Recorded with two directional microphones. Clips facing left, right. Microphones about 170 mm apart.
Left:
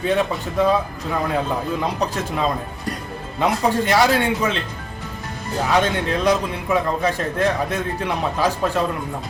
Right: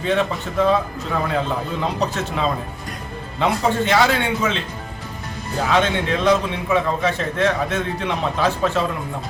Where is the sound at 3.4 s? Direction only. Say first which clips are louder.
Even; 10° left (ahead or behind).